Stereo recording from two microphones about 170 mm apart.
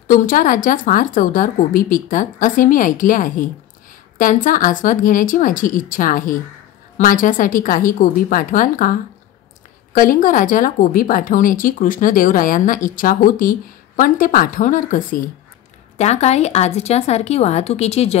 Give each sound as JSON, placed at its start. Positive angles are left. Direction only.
{"t": 0.1, "sound": "speech", "side_deg": 50}
{"t": 9.9, "sound": "a woman's voice", "side_deg": 55}